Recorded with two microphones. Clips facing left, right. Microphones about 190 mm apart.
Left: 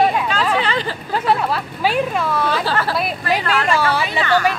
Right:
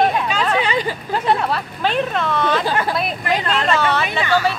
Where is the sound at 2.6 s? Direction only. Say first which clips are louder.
Even; 15° right (ahead or behind).